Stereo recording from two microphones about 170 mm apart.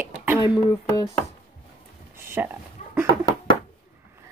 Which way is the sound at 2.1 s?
15° right (ahead or behind).